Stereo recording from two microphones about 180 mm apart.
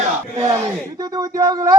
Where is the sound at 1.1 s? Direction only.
20° right (ahead or behind).